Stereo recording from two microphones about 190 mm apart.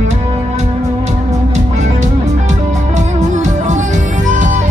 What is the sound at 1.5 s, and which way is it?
Music, 40° right (ahead or behind).